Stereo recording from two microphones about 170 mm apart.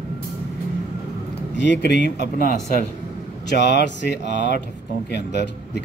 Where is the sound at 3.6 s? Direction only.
90° left.